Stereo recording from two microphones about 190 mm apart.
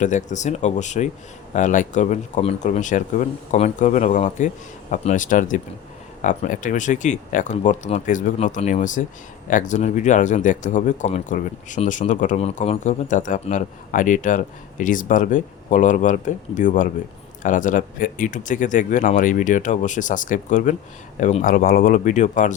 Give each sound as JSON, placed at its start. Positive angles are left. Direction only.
{"t": 0.0, "sound": "speech", "side_deg": 40}